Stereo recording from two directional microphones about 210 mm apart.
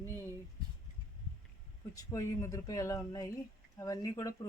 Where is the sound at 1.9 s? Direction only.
15° left (ahead or behind).